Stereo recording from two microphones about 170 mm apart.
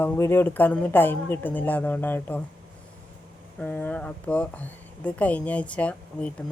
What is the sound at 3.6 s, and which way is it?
Speech, 10° left (ahead or behind).